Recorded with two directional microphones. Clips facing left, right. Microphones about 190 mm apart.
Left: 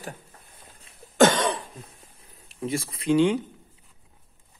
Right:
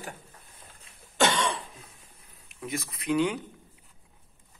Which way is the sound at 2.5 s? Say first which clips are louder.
Left 6 dB; 30° left (ahead or behind).